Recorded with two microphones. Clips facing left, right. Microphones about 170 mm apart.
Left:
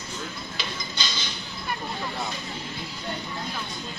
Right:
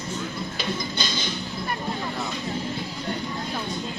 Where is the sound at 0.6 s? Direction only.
50° right (ahead or behind).